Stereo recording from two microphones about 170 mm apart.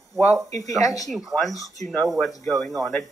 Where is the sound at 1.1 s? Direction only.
Centre (ahead or behind).